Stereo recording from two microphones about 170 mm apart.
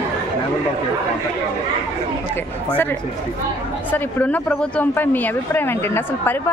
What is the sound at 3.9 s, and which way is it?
Speech, 10° left (ahead or behind).